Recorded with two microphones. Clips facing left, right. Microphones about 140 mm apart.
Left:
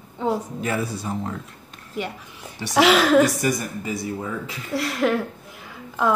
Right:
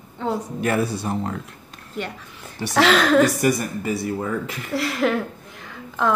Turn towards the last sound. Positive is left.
turn(degrees=5)  # may be behind; listen again after turning